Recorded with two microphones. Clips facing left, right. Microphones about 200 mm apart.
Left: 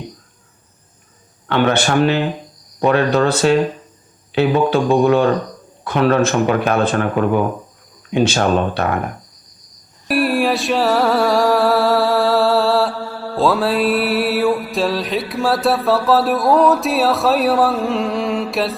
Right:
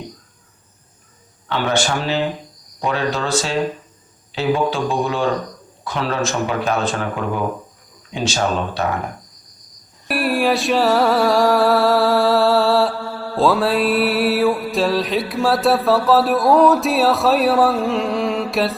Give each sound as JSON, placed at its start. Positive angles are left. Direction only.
{"t": 1.5, "sound": "speech", "side_deg": 60}
{"t": 10.1, "sound": "mantra", "side_deg": 0}